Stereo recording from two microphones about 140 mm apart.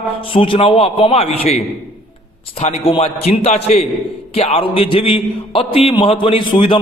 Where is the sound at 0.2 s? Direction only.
40° left (ahead or behind).